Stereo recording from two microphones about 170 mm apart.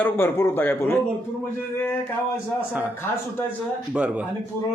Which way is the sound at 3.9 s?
10° right (ahead or behind).